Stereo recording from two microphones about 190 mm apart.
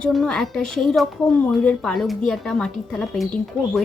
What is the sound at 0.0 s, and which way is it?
Speech, 5° left (ahead or behind).